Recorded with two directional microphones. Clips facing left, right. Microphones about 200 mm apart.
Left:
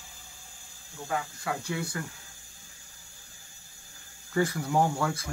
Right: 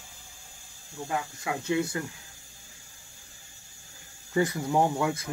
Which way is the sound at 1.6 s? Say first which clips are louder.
Right 6 dB; 20° right (ahead or behind).